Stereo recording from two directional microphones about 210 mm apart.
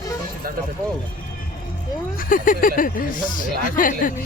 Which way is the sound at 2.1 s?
40° left (ahead or behind).